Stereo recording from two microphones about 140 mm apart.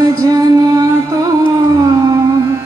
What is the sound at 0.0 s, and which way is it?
Music, 25° right (ahead or behind).